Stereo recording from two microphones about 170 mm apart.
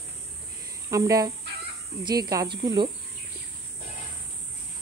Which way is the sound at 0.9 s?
20° right (ahead or behind).